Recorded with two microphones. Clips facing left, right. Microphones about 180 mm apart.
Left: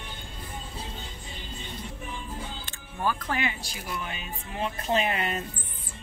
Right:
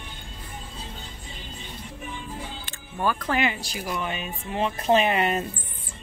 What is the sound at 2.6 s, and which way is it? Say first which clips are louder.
Speech: right 3 dB; 75° right (ahead or behind).